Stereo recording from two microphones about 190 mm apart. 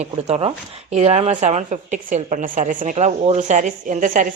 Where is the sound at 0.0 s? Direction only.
30° right (ahead or behind).